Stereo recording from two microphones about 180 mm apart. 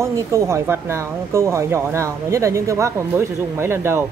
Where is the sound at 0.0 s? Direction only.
15° right (ahead or behind).